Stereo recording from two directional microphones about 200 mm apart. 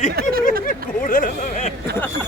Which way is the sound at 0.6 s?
45° left (ahead or behind).